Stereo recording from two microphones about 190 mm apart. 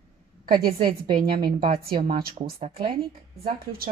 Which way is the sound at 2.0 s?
50° right (ahead or behind).